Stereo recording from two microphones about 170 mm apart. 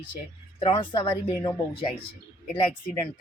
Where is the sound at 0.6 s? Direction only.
30° left (ahead or behind).